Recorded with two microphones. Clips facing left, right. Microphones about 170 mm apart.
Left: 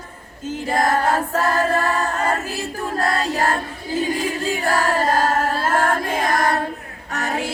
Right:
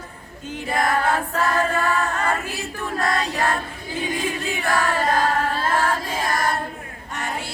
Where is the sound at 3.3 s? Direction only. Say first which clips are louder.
Left 2 dB; 40° left (ahead or behind); by 6.6 s 60° left (ahead or behind).